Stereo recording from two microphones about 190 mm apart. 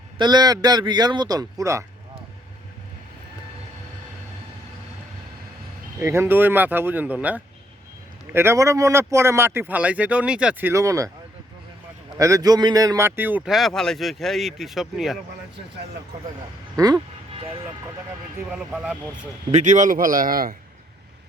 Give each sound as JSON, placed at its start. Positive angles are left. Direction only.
{"t": 0.2, "sound": "a man's voice", "side_deg": -20}
{"t": 6.0, "sound": "speech", "side_deg": -15}
{"t": 12.2, "sound": "speech", "side_deg": -20}
{"t": 16.7, "sound": "speech", "side_deg": -20}
{"t": 17.3, "sound": "speech", "side_deg": -30}
{"t": 18.4, "sound": "speech", "side_deg": -5}
{"t": 19.5, "sound": "a man's voice", "side_deg": -40}